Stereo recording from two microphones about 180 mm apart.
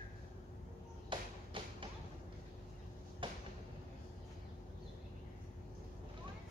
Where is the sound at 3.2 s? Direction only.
30° right (ahead or behind).